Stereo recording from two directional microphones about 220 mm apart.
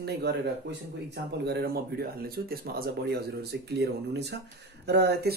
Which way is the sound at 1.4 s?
45° right (ahead or behind).